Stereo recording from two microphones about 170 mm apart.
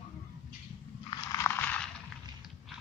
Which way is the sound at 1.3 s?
15° left (ahead or behind).